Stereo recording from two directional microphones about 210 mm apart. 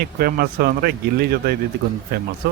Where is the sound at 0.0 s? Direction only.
45° right (ahead or behind).